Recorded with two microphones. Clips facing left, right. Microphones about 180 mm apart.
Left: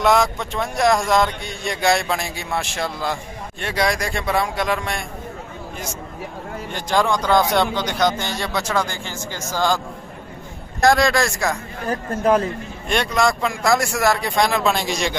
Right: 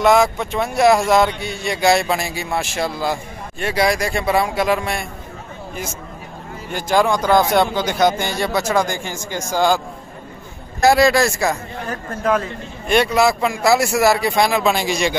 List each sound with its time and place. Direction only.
0.0 s a man's voice: centre (ahead or behind)
6.7 s a man's voice: 5° right (ahead or behind)
10.8 s a man's voice: 5° right (ahead or behind)
11.9 s speech: 35° left (ahead or behind)
12.8 s a man's voice: 5° right (ahead or behind)